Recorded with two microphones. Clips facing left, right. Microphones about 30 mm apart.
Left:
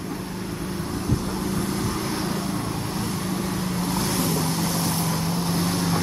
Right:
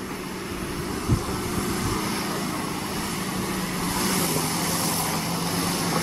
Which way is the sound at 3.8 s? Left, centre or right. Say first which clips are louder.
Even; centre.